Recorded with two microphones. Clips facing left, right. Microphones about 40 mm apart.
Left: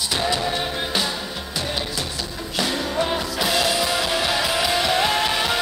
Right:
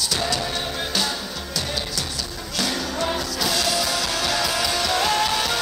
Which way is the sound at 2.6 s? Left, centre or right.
Left.